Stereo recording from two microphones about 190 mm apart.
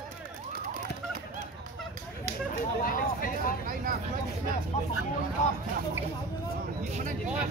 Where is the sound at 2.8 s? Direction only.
50° left (ahead or behind).